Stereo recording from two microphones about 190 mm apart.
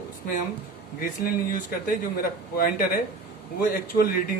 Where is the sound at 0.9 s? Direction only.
50° left (ahead or behind).